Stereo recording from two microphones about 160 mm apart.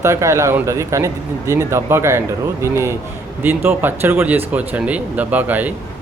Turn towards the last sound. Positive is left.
turn(degrees=-10)  # may be behind; listen again after turning